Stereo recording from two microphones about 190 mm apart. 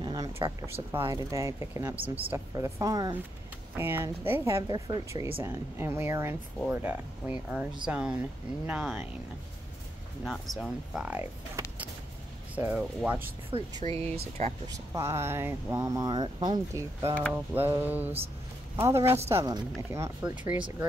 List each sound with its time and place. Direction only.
0.0 s a sound: 20° right (ahead or behind)
0.9 s speech: 15° right (ahead or behind)
10.2 s speech: centre (ahead or behind)
12.5 s speech: 5° right (ahead or behind)
13.5 s speech: 30° right (ahead or behind)
14.7 s speech: 15° right (ahead or behind)